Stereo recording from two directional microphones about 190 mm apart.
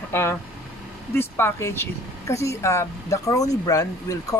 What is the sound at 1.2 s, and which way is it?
Speech, 10° left (ahead or behind).